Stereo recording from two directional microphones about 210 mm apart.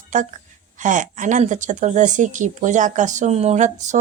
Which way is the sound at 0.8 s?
35° right (ahead or behind).